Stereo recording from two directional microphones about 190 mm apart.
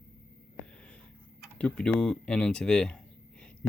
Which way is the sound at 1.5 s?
5° left (ahead or behind).